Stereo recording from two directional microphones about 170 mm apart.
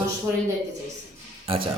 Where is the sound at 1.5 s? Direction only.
30° right (ahead or behind).